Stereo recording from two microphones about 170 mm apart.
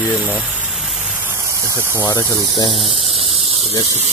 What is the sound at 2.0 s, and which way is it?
Speech, 20° left (ahead or behind).